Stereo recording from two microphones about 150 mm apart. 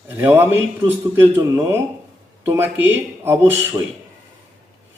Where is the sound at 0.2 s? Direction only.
15° right (ahead or behind).